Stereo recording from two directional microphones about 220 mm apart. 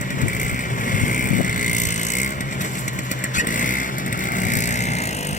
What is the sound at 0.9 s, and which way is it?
Vehicle, 35° left (ahead or behind).